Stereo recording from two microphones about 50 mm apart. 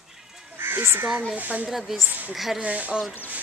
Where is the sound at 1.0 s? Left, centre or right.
Right.